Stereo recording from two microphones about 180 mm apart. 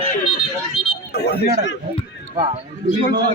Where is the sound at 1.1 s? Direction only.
65° left (ahead or behind).